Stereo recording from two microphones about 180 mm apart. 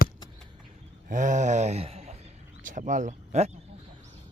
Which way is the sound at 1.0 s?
45° right (ahead or behind).